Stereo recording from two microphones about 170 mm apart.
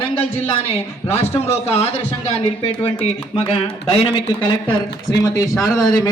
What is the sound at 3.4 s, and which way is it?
A man's voice, 35° left (ahead or behind).